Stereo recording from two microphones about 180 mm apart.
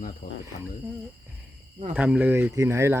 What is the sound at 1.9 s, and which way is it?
Speech, 10° right (ahead or behind).